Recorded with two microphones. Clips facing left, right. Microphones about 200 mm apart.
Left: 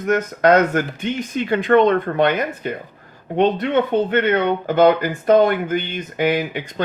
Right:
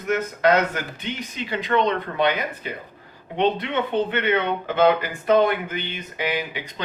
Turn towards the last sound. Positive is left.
turn(degrees=50)  # may be behind; listen again after turning